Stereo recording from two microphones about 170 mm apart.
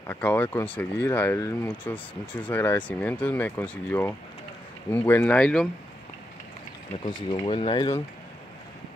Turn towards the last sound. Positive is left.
turn(degrees=30)  # may be behind; listen again after turning